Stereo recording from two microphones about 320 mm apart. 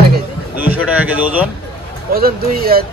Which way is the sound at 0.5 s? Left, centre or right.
Centre.